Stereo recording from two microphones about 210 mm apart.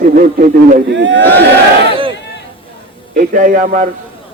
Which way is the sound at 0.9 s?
60° right (ahead or behind).